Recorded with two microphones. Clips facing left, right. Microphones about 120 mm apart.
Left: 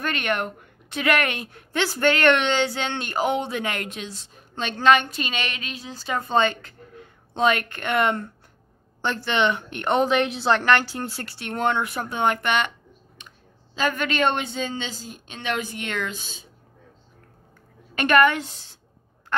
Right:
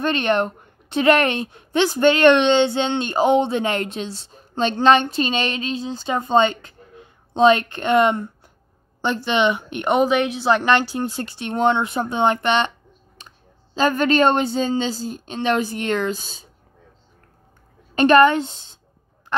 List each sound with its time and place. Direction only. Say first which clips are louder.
0.0 s a woman's voice: right 6 dB; 30° right (ahead or behind); by 10.5 s 5° right (ahead or behind)
10.5 s a woman's voice: right 3 dB; 20° right (ahead or behind)
13.2 s a sound: right 3 dB; 35° right (ahead or behind)
13.7 s a woman's voice: right 7 dB; 35° right (ahead or behind)
17.9 s a woman's voice: right 5 dB; 30° right (ahead or behind)